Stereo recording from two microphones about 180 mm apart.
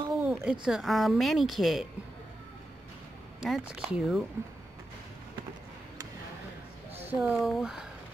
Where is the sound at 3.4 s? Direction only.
5° right (ahead or behind).